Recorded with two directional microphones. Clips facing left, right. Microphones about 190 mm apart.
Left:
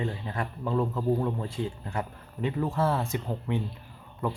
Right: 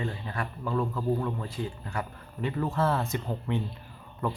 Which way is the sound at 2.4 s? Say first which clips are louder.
Left 1 dB; 15° left (ahead or behind).